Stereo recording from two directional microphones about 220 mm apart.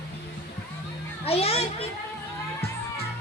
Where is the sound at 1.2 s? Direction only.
25° left (ahead or behind).